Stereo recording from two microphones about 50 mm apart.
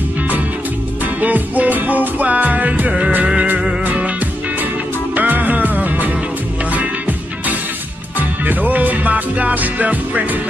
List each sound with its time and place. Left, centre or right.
1.2 s music: right
5.1 s music: right